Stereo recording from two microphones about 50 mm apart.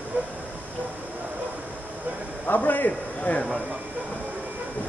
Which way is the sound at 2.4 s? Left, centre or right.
Left.